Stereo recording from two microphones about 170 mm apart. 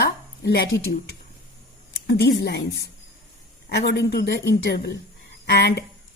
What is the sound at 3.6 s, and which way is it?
Speech, 75° left (ahead or behind).